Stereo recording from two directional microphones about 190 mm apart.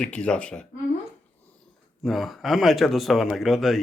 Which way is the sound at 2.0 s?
Centre (ahead or behind).